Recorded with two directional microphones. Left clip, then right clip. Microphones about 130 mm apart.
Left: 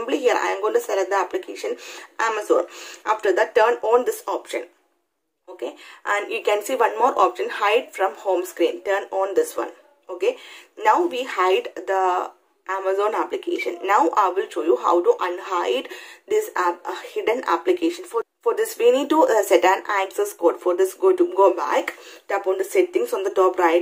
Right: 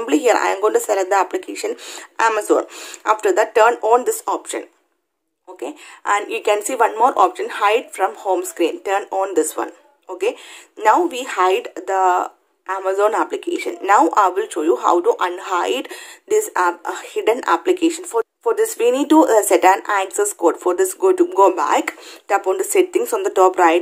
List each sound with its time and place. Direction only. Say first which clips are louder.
0.0 s a woman's voice: right 5 dB; 45° right (ahead or behind)
10.8 s a woman's voice: right 3 dB; 40° right (ahead or behind)